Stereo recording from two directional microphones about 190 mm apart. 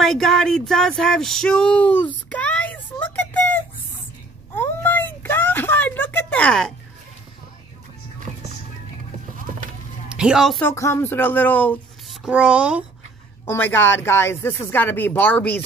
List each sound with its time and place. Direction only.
0.0 s a sound: centre (ahead or behind)
8.3 s music: 30° right (ahead or behind)
10.1 s a woman's voice: 5° right (ahead or behind)
10.6 s speech: 15° left (ahead or behind)
12.3 s a child's voice: 5° right (ahead or behind)
13.5 s speech: 10° left (ahead or behind)